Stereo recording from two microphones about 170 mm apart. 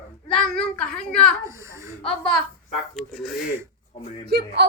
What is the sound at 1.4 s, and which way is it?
Speech, 15° right (ahead or behind).